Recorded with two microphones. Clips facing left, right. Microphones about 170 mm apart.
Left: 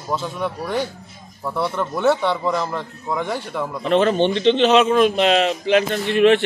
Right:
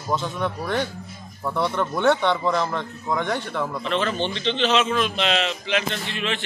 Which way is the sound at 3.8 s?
45° left (ahead or behind).